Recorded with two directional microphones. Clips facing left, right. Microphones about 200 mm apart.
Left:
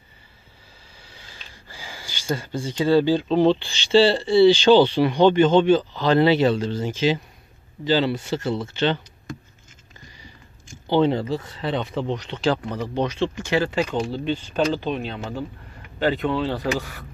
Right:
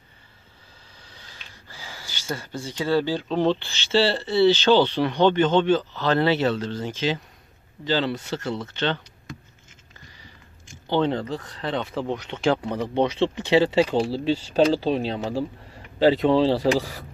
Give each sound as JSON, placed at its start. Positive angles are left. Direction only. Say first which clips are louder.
{"t": 0.9, "sound": "speech", "louder": "left 2 dB", "side_deg": 10}
{"t": 9.3, "sound": "a sound", "louder": "left 4 dB", "side_deg": 45}
{"t": 10.9, "sound": "speech", "louder": "left 3 dB", "side_deg": 10}
{"t": 12.6, "sound": "speech", "louder": "right 2 dB", "side_deg": -25}